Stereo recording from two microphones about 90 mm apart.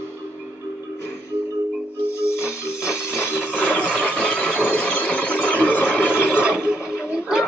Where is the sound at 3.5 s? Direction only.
15° left (ahead or behind).